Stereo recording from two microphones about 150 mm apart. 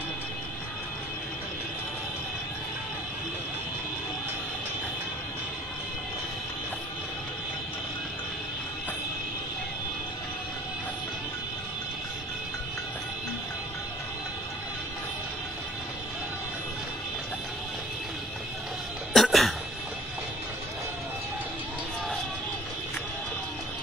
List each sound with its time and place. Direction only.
19.1 s cough: centre (ahead or behind)